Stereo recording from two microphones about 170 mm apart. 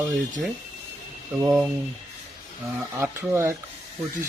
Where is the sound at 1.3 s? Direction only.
15° right (ahead or behind).